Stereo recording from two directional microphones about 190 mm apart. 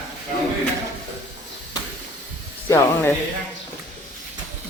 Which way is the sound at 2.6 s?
15° left (ahead or behind).